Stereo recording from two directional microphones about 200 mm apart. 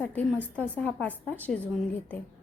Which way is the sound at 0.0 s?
5° left (ahead or behind).